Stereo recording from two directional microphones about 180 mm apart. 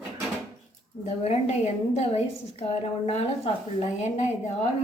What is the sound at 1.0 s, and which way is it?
A woman's voice, 35° left (ahead or behind).